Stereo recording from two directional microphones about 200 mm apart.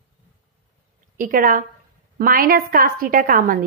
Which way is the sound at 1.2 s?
45° right (ahead or behind).